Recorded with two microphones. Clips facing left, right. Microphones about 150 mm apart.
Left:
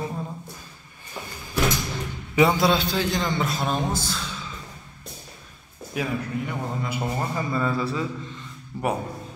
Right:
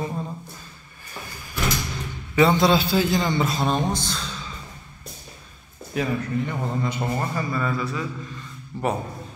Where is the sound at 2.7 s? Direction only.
5° right (ahead or behind).